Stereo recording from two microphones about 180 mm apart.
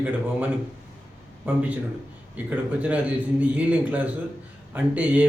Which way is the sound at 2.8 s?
10° right (ahead or behind).